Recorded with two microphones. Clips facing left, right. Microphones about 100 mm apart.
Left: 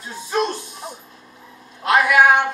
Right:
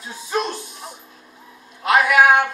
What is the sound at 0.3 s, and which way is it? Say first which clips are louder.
Music: left 2 dB; centre (ahead or behind).